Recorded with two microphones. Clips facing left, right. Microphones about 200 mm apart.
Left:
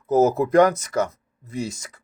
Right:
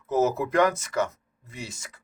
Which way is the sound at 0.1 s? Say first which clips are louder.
Left 6 dB; 35° left (ahead or behind).